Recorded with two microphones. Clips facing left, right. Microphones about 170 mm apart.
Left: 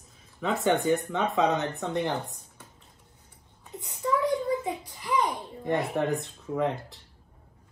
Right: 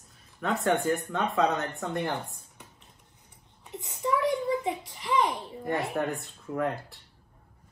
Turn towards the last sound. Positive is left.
turn(degrees=0)  # may be behind; listen again after turning